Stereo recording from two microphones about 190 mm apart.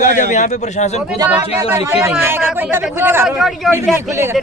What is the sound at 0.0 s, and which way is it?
Speech, 40° left (ahead or behind).